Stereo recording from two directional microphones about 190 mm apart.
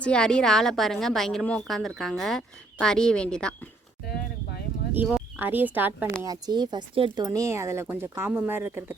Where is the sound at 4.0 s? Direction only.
55° left (ahead or behind).